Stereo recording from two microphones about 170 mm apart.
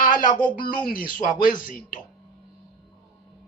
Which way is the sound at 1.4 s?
55° left (ahead or behind).